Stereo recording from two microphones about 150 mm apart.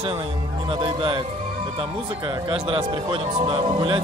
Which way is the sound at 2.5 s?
35° right (ahead or behind).